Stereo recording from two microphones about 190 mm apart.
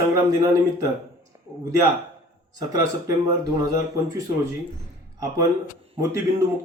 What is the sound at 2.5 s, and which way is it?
Speech, 20° right (ahead or behind).